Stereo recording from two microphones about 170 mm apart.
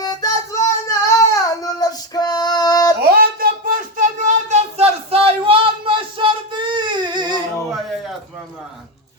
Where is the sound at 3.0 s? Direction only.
60° right (ahead or behind); by 7.4 s 25° right (ahead or behind).